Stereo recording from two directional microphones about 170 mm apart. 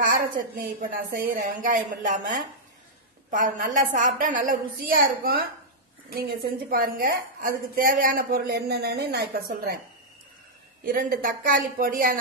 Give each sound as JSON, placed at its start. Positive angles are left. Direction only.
{"t": 0.0, "sound": "a woman's voice", "side_deg": -55}
{"t": 10.8, "sound": "a woman's voice", "side_deg": -60}